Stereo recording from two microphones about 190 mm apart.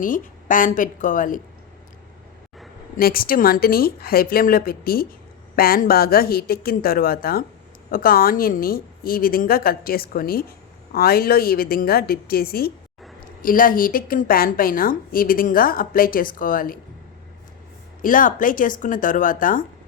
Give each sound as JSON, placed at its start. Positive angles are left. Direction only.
{"t": 0.0, "sound": "a woman's voice", "side_deg": 45}
{"t": 3.0, "sound": "a woman's voice", "side_deg": 50}
{"t": 18.0, "sound": "a woman's voice", "side_deg": 45}